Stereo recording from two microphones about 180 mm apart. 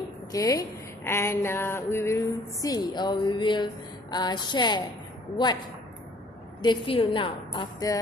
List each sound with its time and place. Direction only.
0.3 s speech: 20° left (ahead or behind)
6.6 s speech: 25° left (ahead or behind)